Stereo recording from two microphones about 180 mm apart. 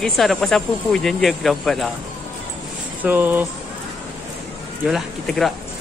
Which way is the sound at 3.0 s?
10° right (ahead or behind).